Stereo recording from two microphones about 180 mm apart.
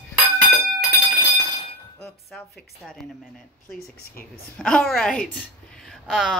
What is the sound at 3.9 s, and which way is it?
Speech, 55° left (ahead or behind).